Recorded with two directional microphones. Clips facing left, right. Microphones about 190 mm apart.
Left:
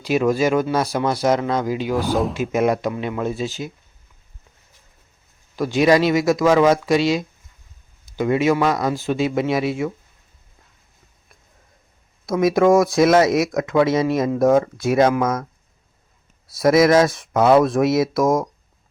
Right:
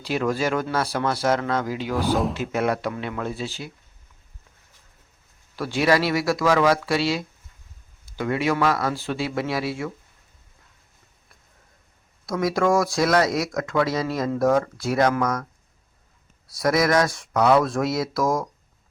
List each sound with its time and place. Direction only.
0.0 s speech: 15° left (ahead or behind)
2.0 s speech: centre (ahead or behind)
2.3 s speech: 15° left (ahead or behind)
5.5 s speech: 15° left (ahead or behind)
12.2 s speech: 20° left (ahead or behind)
16.6 s speech: 25° left (ahead or behind)